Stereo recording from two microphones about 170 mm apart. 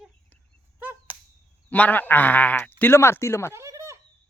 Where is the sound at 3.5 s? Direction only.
15° right (ahead or behind).